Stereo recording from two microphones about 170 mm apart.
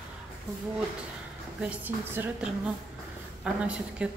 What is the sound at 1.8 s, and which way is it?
A woman's voice, 10° right (ahead or behind).